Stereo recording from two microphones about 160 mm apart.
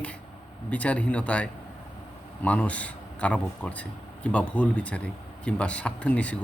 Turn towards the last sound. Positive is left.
turn(degrees=10)  # may be behind; listen again after turning